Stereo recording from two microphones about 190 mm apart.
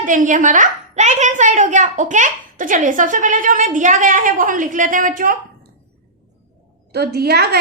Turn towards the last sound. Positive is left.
turn(degrees=-55)  # may be behind; listen again after turning